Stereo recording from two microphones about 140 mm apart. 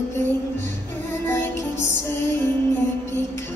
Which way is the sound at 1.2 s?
15° left (ahead or behind).